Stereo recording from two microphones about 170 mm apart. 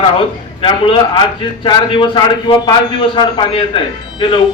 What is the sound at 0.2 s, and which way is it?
A man's voice, 30° left (ahead or behind).